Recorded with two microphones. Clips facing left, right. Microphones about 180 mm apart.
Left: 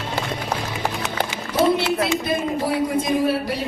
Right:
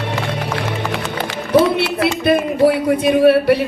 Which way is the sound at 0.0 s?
70° right (ahead or behind).